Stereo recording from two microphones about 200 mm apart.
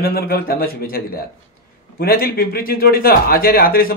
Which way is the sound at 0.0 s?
50° left (ahead or behind).